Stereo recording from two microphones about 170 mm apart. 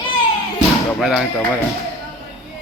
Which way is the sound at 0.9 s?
Centre (ahead or behind).